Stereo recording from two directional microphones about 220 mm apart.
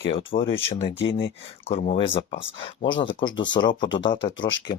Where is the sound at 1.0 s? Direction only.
50° left (ahead or behind).